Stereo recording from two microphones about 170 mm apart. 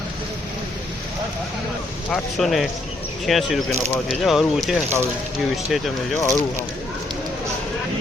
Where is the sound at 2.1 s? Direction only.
Centre (ahead or behind).